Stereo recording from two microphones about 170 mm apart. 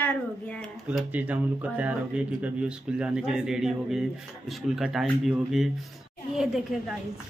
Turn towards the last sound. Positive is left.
turn(degrees=0)  # may be behind; listen again after turning